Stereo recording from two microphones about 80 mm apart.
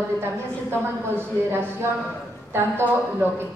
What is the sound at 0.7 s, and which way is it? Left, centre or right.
Speech, right.